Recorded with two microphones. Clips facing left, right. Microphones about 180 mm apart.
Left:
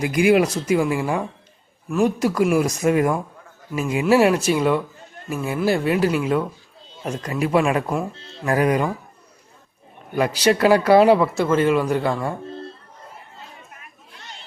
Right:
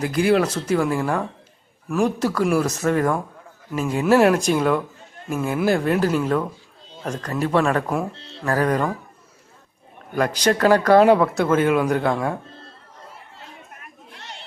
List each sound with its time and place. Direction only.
0.0 s speech: 15° left (ahead or behind)
10.2 s speech: 10° left (ahead or behind)
13.8 s chatter: 65° right (ahead or behind)